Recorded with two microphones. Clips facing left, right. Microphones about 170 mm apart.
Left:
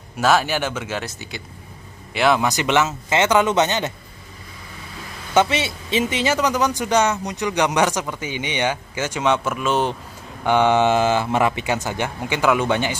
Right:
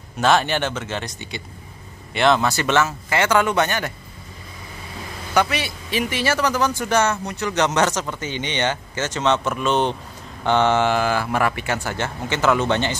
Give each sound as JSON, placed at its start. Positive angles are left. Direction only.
{"t": 0.2, "sound": "a man's voice", "side_deg": 5}
{"t": 5.3, "sound": "a man's voice", "side_deg": 25}